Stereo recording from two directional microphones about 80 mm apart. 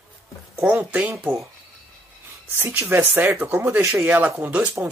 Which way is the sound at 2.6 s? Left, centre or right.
Right.